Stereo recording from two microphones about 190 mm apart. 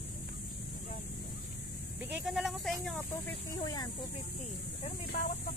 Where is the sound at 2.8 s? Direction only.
5° left (ahead or behind).